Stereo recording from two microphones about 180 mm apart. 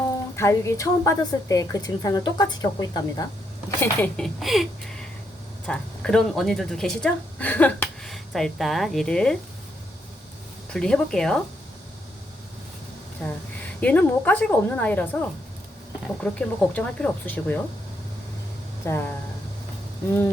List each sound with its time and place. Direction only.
0.3 s a woman's voice: 15° left (ahead or behind)
3.8 s speech: 5° left (ahead or behind)
5.6 s speech: 5° left (ahead or behind)
10.7 s speech: 5° left (ahead or behind)
13.8 s a woman's voice: 10° left (ahead or behind)
18.9 s a woman's voice: 15° left (ahead or behind)